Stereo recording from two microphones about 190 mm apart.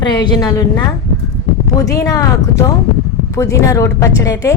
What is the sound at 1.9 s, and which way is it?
Speech, 20° left (ahead or behind).